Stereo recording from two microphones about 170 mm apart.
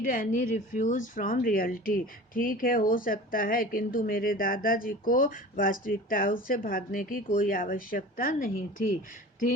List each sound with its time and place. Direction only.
0.0 s speech: 55° left (ahead or behind)